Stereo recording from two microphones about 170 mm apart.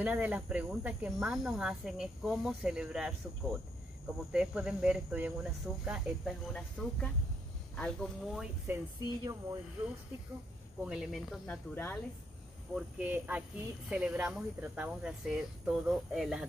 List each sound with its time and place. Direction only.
0.0 s speech: 10° right (ahead or behind)
8.7 s speech: 10° right (ahead or behind)
10.8 s speech: 5° right (ahead or behind)
12.7 s speech: 10° right (ahead or behind)